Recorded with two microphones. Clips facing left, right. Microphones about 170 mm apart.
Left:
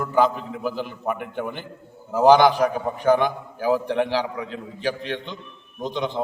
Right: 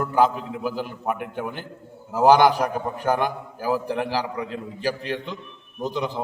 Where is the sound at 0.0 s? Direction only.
5° right (ahead or behind).